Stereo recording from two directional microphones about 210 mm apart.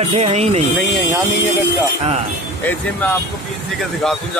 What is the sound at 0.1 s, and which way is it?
Speech, 30° right (ahead or behind).